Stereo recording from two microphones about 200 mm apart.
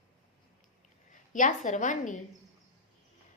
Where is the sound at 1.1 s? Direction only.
40° left (ahead or behind).